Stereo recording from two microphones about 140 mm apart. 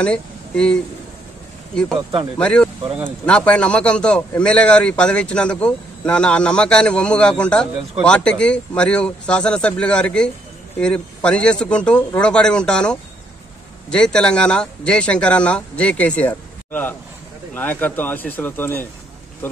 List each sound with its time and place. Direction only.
0.0 s speech: 5° left (ahead or behind)
2.3 s speech: 5° left (ahead or behind)